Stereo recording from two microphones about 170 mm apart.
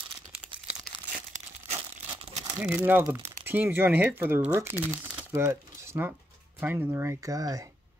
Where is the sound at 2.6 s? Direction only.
10° right (ahead or behind).